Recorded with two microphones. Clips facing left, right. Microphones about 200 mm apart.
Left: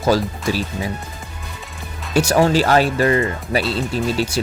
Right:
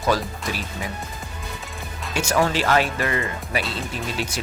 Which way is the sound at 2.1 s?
35° left (ahead or behind).